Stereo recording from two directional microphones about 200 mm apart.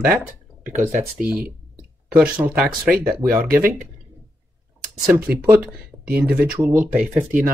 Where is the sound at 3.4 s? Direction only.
50° right (ahead or behind).